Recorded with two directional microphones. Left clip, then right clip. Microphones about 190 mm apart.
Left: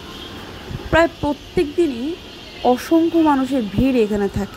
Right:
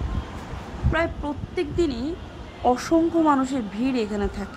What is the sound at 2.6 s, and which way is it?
A woman's voice, 15° left (ahead or behind).